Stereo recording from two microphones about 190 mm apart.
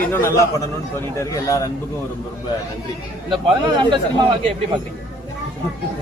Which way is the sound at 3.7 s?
25° right (ahead or behind).